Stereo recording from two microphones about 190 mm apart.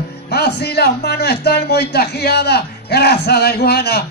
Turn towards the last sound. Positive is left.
turn(degrees=55)  # may be behind; listen again after turning